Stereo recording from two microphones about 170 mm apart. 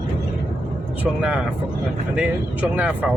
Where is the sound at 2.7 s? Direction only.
10° right (ahead or behind).